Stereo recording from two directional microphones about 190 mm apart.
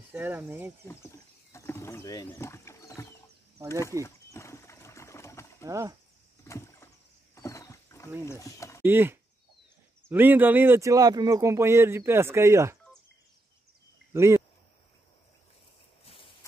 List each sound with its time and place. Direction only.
0.1 s speech: 10° right (ahead or behind)
1.5 s mechanisms: 15° left (ahead or behind)
4.0 s a sound: 15° left (ahead or behind)
5.7 s speech: 15° right (ahead or behind)
6.4 s vehicle: 15° left (ahead or behind)
7.3 s wild animals: 15° left (ahead or behind)
8.3 s speech: 15° left (ahead or behind)
8.8 s speech: 10° right (ahead or behind)
14.1 s speech: 15° right (ahead or behind)